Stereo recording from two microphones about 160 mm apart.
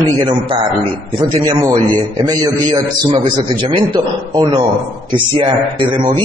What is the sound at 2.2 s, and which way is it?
A man's voice, 25° right (ahead or behind).